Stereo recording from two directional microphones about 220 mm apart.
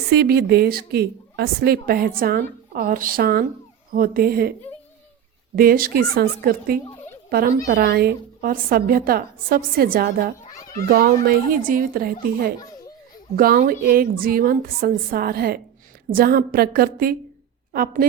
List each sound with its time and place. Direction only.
0.1 s a woman's voice: 45° right (ahead or behind)
5.5 s a woman's voice: 40° right (ahead or behind)